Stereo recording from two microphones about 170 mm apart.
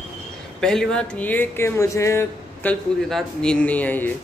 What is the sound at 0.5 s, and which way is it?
Speech, 5° left (ahead or behind).